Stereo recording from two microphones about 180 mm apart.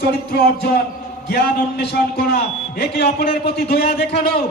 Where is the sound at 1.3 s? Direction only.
60° left (ahead or behind).